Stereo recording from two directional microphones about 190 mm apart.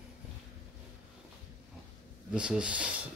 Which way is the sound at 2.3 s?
5° right (ahead or behind).